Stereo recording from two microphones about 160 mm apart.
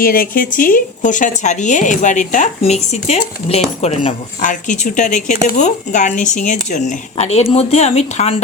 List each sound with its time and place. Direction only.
0.0 s speech: 65° left (ahead or behind); by 8.4 s 45° left (ahead or behind)